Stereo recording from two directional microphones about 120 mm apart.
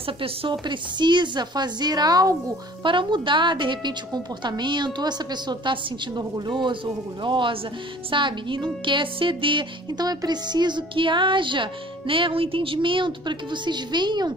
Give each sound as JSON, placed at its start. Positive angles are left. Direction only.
{"t": 0.0, "sound": "a woman's voice", "side_deg": -50}
{"t": 2.8, "sound": "a woman's voice", "side_deg": -45}